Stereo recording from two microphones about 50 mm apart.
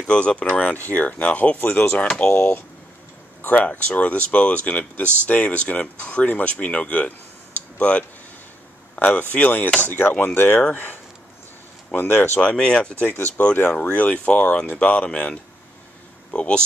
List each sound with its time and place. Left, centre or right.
0.0 s speech: centre
2.3 s speech: left
7.5 s a sound: left
8.9 s speech: left
9.8 s speech: left
10.6 s speech: left
11.9 s speech: left
12.4 s speech: centre
13.7 s speech: left